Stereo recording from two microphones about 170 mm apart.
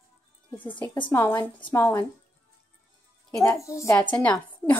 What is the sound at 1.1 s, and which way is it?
Speech, 10° left (ahead or behind).